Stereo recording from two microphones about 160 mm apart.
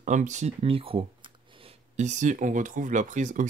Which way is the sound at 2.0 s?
50° right (ahead or behind).